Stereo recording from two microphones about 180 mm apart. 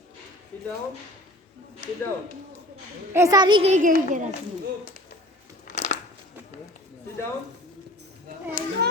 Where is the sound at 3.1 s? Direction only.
15° right (ahead or behind).